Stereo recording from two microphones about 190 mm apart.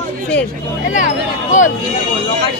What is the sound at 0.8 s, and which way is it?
Speech, 40° left (ahead or behind).